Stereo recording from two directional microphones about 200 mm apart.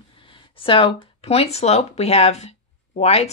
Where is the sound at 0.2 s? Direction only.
25° left (ahead or behind).